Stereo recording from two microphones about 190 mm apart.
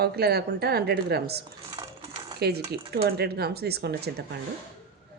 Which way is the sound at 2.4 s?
55° right (ahead or behind).